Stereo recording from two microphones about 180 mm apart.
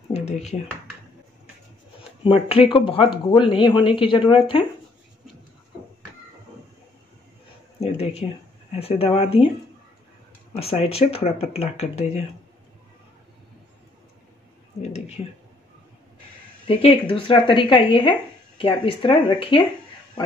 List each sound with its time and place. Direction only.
0.1 s speech: 40° left (ahead or behind)
2.2 s speech: 30° left (ahead or behind)
7.8 s speech: 35° left (ahead or behind)
10.5 s speech: 35° left (ahead or behind)
14.8 s speech: 35° left (ahead or behind)
16.6 s speech: 30° left (ahead or behind)